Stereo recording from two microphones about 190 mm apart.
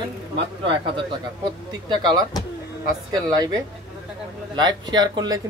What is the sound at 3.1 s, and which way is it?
Speech, 20° right (ahead or behind).